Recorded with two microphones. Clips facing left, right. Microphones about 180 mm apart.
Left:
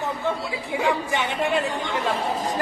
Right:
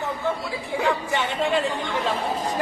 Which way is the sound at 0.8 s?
15° left (ahead or behind).